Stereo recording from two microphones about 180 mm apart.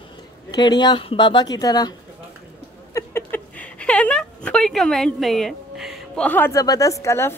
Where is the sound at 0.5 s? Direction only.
25° left (ahead or behind).